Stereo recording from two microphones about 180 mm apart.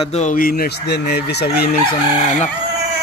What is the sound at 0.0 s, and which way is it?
Fowl, 40° left (ahead or behind).